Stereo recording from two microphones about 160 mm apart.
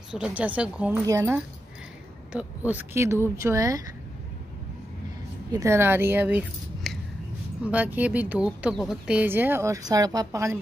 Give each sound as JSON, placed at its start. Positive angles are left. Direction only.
{"t": 0.1, "sound": "speech", "side_deg": -5}
{"t": 5.5, "sound": "speech", "side_deg": -20}
{"t": 6.8, "sound": "a sound", "side_deg": 0}
{"t": 7.6, "sound": "speech", "side_deg": -10}